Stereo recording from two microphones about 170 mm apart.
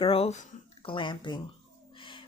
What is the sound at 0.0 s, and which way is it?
Speech, 35° left (ahead or behind).